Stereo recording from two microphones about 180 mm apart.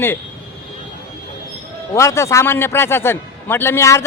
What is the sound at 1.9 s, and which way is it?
A man's voice, 15° left (ahead or behind).